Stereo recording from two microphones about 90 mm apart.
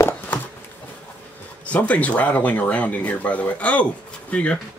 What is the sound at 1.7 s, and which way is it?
Speech, 15° left (ahead or behind).